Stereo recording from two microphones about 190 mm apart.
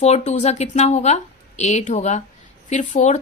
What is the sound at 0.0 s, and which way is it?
Speech, 35° left (ahead or behind).